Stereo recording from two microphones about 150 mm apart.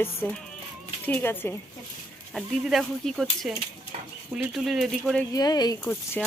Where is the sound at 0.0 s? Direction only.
10° left (ahead or behind).